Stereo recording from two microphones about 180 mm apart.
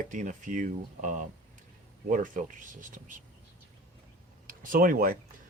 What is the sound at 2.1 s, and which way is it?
Speech, 45° right (ahead or behind).